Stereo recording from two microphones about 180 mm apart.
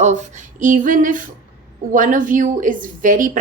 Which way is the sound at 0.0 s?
40° right (ahead or behind).